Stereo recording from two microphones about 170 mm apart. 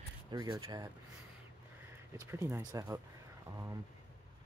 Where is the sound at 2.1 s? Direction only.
15° right (ahead or behind).